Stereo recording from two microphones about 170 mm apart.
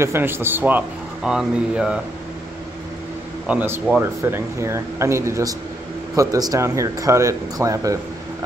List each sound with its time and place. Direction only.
0.0 s speech: 15° right (ahead or behind)
3.4 s speech: 10° right (ahead or behind)